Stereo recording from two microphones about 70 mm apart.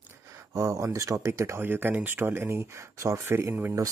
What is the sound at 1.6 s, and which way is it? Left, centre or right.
Speech, right.